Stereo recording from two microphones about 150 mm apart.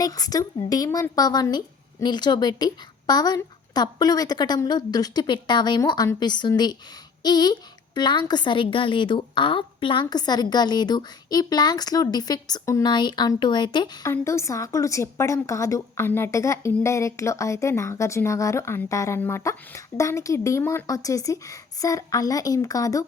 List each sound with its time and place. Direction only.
0.0 s a woman's voice: 25° left (ahead or behind)